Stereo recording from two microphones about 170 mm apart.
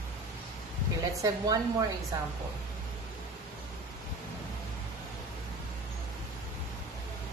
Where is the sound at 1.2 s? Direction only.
20° right (ahead or behind).